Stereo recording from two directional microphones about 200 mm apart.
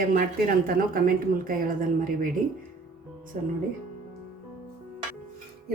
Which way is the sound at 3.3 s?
40° right (ahead or behind).